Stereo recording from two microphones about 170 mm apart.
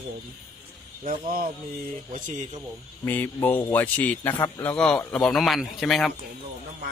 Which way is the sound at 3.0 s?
10° left (ahead or behind).